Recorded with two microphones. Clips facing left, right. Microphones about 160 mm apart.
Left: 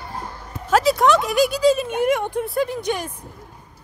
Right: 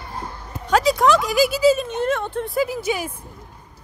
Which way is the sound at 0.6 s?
Centre (ahead or behind).